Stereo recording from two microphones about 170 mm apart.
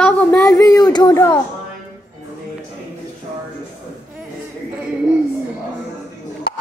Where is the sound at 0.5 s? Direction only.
20° left (ahead or behind).